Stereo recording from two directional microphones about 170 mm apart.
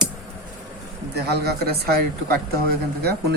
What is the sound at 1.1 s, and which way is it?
A man's voice, 70° right (ahead or behind).